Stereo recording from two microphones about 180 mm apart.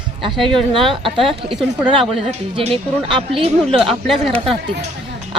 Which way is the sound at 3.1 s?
30° right (ahead or behind).